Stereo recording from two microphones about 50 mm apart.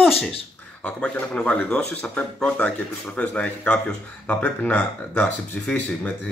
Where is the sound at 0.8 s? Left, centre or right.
Left.